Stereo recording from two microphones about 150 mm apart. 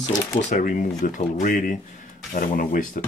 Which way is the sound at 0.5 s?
60° left (ahead or behind).